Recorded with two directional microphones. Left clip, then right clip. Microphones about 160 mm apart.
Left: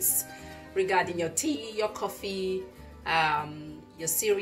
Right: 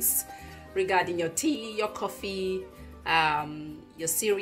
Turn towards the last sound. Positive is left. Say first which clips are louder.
# even
turn(degrees=-35)  # may be behind; listen again after turning